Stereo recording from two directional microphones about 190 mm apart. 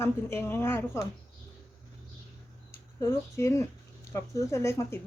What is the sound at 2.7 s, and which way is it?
Speech, 15° left (ahead or behind).